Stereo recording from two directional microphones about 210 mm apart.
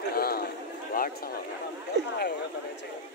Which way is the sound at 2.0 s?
55° right (ahead or behind).